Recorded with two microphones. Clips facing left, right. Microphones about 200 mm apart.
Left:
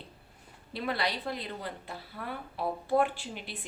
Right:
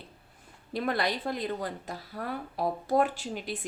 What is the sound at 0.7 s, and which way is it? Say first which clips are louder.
A woman's voice: right 3 dB; 45° right (ahead or behind).